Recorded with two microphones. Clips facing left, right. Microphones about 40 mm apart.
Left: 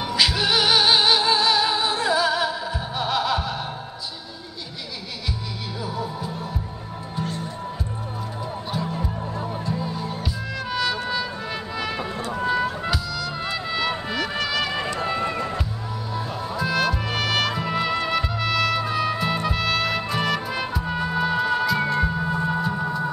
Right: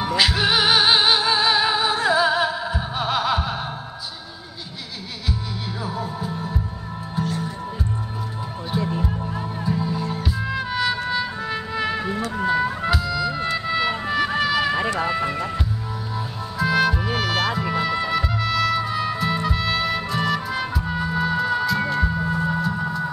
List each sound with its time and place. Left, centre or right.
0.1 s music: centre
5.9 s music: centre
8.7 s music: right
9.8 s music: centre
10.2 s music: centre
13.4 s music: centre
16.2 s music: centre